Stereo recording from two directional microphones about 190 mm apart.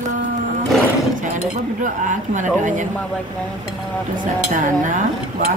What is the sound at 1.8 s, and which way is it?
Speech, 40° right (ahead or behind).